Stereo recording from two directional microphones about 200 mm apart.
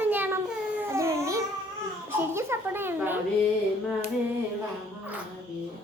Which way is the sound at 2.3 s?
10° right (ahead or behind).